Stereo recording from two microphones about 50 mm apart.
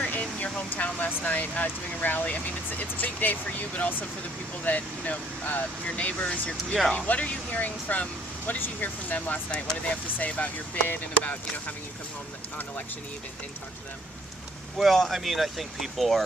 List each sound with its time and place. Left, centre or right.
0.0 s air conditioning: left
1.2 s speech: left
14.8 s speech: centre